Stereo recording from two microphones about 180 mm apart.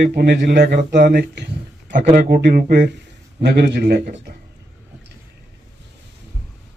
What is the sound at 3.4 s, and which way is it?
Speech, 70° right (ahead or behind).